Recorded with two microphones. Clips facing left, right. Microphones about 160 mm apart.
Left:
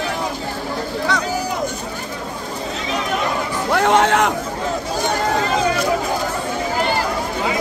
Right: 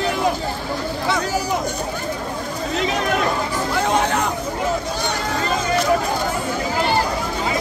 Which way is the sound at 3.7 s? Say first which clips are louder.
Left 5 dB; 75° left (ahead or behind).